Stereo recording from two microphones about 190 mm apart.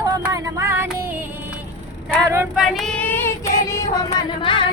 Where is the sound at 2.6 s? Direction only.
Centre (ahead or behind).